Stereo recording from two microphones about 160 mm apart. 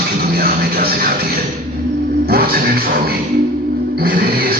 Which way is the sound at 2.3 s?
70° right (ahead or behind).